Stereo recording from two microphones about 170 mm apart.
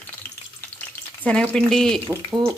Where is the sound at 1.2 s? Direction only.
5° left (ahead or behind).